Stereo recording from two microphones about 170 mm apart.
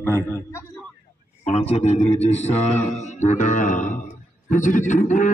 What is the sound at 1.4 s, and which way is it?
A man's voice, 40° left (ahead or behind).